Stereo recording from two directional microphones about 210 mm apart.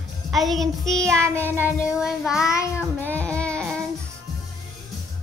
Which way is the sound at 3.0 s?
10° left (ahead or behind).